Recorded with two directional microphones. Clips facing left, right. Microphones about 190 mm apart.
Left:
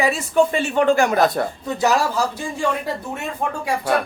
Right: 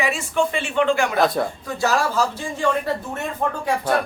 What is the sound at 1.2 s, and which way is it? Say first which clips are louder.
Speech: left 1 dB; centre (ahead or behind).